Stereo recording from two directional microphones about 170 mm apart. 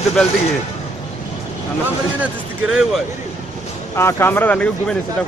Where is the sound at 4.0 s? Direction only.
15° left (ahead or behind).